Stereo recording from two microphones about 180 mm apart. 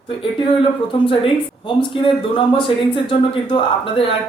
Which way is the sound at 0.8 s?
30° left (ahead or behind).